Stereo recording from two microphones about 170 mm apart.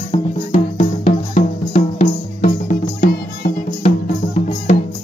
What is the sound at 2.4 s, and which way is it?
Music, 55° left (ahead or behind).